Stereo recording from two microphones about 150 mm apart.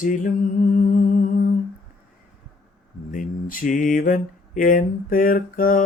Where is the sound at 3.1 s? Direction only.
65° left (ahead or behind).